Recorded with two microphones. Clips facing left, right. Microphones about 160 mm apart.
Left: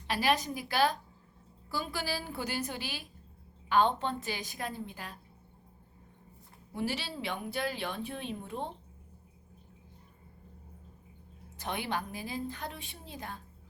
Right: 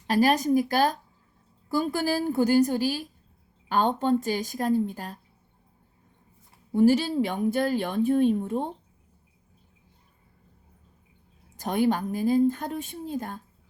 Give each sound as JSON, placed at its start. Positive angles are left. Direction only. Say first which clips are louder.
{"t": 0.1, "sound": "a woman's voice", "louder": "right 9 dB", "side_deg": -45}
{"t": 6.7, "sound": "a woman's voice", "louder": "right 15 dB", "side_deg": -45}
{"t": 11.5, "sound": "a woman's voice", "louder": "right 11 dB", "side_deg": -45}